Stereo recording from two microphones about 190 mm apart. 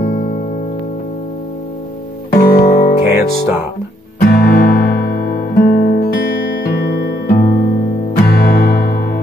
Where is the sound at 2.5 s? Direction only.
50° left (ahead or behind).